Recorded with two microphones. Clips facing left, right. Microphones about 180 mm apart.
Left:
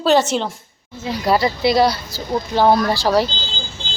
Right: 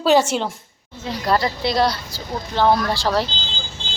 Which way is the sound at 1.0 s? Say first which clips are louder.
Left 3 dB; 5° left (ahead or behind).